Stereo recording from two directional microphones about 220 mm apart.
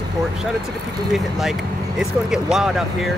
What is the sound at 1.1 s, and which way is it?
Speech, centre (ahead or behind).